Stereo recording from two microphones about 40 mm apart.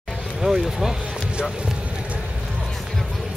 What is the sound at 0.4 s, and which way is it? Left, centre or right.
Speech, centre.